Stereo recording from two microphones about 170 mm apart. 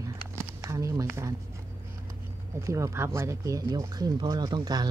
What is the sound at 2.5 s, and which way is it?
Speech, 15° right (ahead or behind).